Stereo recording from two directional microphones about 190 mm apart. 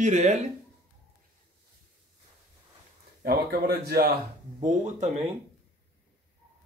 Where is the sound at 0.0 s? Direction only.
40° right (ahead or behind).